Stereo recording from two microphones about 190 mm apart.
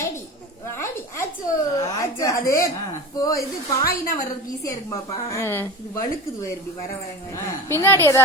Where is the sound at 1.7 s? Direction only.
15° left (ahead or behind).